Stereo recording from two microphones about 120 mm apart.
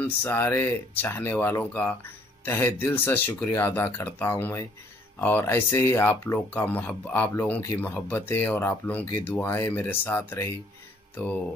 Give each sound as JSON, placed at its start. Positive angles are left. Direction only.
{"t": 0.0, "sound": "speech", "side_deg": 15}